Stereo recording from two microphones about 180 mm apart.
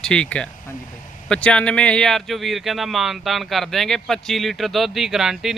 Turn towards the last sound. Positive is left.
turn(degrees=0)  # may be behind; listen again after turning